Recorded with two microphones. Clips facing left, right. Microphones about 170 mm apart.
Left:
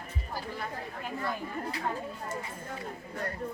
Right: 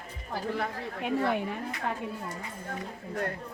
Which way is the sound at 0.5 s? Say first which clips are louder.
Right 5 dB; 70° right (ahead or behind).